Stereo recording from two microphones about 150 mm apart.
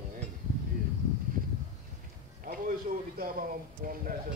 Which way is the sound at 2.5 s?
70° right (ahead or behind).